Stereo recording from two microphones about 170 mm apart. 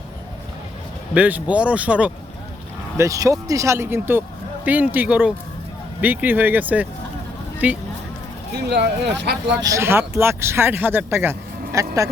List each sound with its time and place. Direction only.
1.1 s speech: 10° right (ahead or behind)
3.0 s speech: 20° right (ahead or behind)
8.5 s speech: 80° right
9.6 s speech: 20° right (ahead or behind)